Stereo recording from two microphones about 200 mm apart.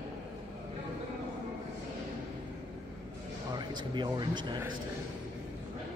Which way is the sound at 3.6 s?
20° right (ahead or behind).